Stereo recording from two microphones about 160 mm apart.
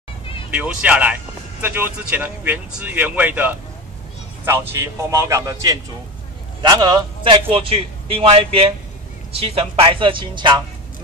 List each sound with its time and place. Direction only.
0.5 s a man's voice: 5° right (ahead or behind); by 10.6 s 30° right (ahead or behind)